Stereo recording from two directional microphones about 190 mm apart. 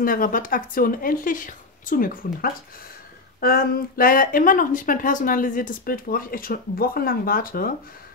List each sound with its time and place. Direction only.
0.0 s speech: 45° left (ahead or behind)